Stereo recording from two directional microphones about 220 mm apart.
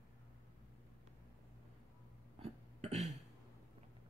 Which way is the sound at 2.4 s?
30° right (ahead or behind).